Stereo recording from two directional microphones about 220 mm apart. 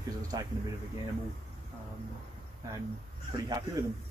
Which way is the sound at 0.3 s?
15° right (ahead or behind).